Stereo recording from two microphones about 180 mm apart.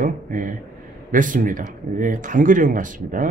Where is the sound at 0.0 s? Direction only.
45° right (ahead or behind).